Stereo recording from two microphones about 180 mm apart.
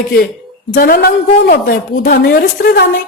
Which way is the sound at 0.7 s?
55° left (ahead or behind).